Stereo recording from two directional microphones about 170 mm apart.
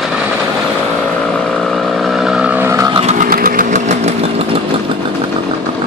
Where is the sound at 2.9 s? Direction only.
35° right (ahead or behind).